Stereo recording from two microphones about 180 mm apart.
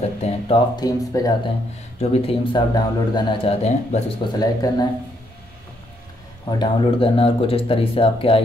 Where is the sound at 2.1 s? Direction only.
30° left (ahead or behind).